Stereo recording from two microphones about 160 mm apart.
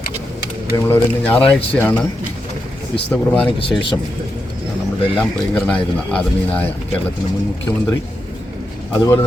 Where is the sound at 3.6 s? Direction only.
30° left (ahead or behind).